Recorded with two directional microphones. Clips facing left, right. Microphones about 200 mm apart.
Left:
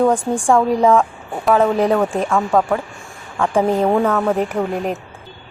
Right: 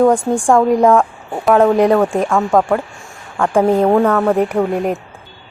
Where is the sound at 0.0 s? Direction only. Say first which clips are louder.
Right 3 dB; 10° right (ahead or behind).